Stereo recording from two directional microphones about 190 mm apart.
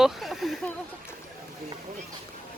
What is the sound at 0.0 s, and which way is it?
Speech, centre (ahead or behind).